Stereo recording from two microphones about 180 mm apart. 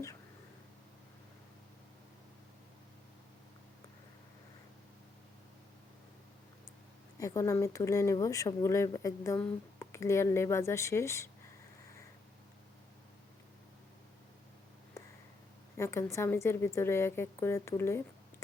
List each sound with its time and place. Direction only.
7.2 s speech: 15° left (ahead or behind)
15.8 s speech: 15° left (ahead or behind)